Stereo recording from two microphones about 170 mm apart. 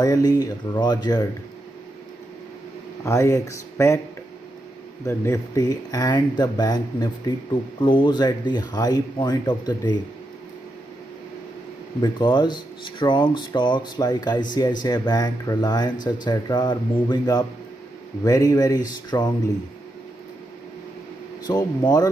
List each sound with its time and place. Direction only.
0.0 s speech: 25° left (ahead or behind)
3.0 s speech: 15° left (ahead or behind)
5.0 s speech: 20° left (ahead or behind)
12.0 s speech: 25° left (ahead or behind)
21.5 s speech: 25° left (ahead or behind)